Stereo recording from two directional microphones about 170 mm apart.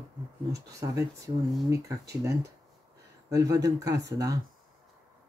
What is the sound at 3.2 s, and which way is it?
Speech, 20° right (ahead or behind).